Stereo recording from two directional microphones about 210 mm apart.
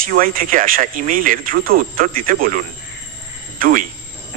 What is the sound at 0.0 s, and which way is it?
Speech, 40° right (ahead or behind).